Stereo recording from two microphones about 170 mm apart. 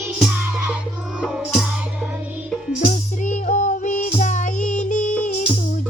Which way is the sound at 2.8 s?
50° left (ahead or behind).